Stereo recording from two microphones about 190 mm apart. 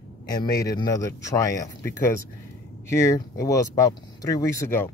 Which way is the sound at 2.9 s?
15° left (ahead or behind).